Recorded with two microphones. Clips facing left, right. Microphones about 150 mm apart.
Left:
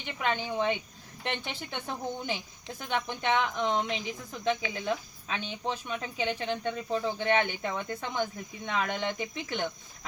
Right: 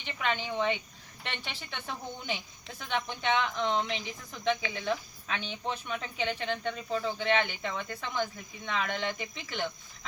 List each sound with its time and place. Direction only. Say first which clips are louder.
0.2 s speech: left 1 dB; 15° left (ahead or behind)